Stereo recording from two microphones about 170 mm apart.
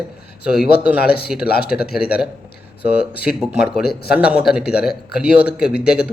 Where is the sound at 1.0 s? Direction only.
70° left (ahead or behind).